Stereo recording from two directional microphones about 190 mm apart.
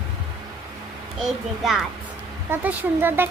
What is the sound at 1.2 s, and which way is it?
A child's voice, centre (ahead or behind).